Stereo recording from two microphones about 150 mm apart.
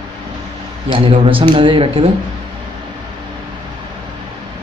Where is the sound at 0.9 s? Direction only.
35° right (ahead or behind).